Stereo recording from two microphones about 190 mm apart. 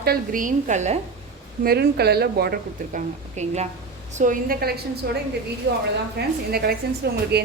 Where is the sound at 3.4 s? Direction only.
35° right (ahead or behind).